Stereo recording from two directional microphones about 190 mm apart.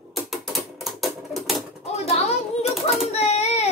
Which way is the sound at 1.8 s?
35° left (ahead or behind).